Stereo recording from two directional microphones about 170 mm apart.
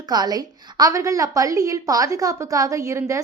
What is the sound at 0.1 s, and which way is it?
A woman's voice, 25° right (ahead or behind).